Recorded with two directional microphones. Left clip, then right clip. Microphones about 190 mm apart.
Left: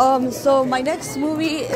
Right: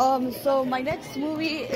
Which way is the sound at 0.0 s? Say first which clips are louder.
Left 6 dB; 5° left (ahead or behind).